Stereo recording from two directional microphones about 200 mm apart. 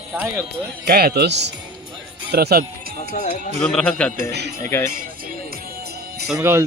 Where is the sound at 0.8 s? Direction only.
50° right (ahead or behind).